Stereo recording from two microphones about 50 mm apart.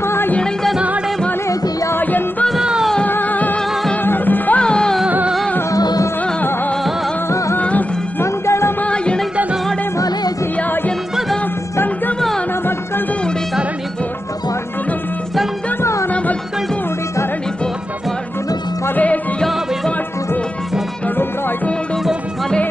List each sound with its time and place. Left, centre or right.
0.0 s music: left
2.0 s music: left
4.6 s music: centre
7.2 s music: left
8.2 s music: left
8.8 s music: centre
15.8 s music: left